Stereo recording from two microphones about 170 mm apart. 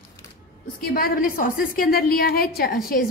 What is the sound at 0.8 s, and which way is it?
A woman's voice, 60° left (ahead or behind).